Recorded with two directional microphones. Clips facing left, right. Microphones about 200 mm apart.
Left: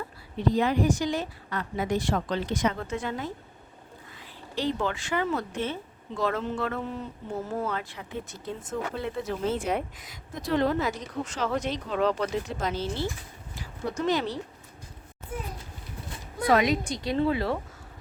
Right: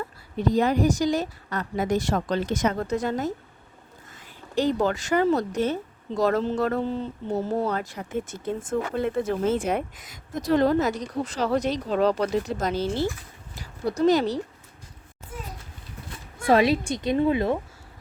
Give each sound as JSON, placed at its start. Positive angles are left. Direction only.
{"t": 0.3, "sound": "speech", "side_deg": -40}
{"t": 16.5, "sound": "a woman's voice", "side_deg": -30}